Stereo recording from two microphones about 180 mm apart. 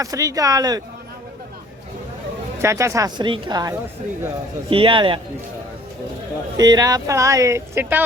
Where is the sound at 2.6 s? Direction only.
15° right (ahead or behind).